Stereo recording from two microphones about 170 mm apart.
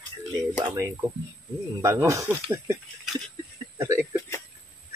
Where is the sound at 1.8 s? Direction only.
15° right (ahead or behind).